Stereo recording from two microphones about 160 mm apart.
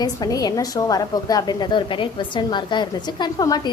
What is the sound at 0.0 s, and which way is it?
A woman's voice, 25° left (ahead or behind).